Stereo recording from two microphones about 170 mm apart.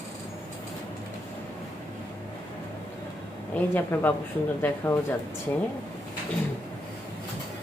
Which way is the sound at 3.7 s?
10° left (ahead or behind).